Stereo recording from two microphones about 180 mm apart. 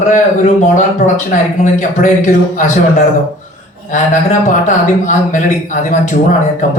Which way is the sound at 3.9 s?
45° left (ahead or behind).